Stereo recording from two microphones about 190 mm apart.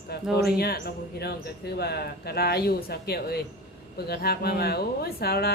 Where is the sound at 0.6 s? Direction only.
55° left (ahead or behind).